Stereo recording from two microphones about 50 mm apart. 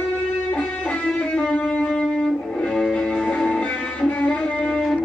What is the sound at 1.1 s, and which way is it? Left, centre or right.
Music, left.